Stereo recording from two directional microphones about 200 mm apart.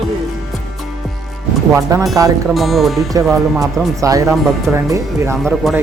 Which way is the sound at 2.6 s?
Centre (ahead or behind).